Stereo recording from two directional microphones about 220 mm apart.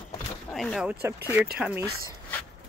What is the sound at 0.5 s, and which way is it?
Speech, centre (ahead or behind).